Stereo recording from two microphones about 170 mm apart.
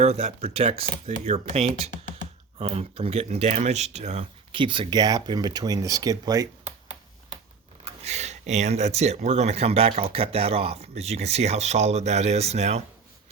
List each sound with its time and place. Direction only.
0.0 s speech: 40° right (ahead or behind); by 6.5 s 20° right (ahead or behind)
8.0 s speech: 40° right (ahead or behind)